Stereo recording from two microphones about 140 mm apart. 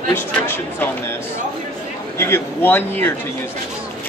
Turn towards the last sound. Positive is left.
turn(degrees=15)  # may be behind; listen again after turning